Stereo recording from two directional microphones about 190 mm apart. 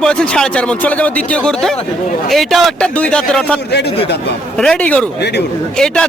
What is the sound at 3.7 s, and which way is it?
Speech, 60° left (ahead or behind).